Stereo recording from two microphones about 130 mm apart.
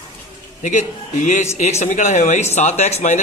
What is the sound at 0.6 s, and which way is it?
A man's voice, 70° left (ahead or behind).